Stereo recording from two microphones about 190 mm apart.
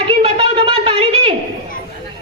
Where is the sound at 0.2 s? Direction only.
30° right (ahead or behind).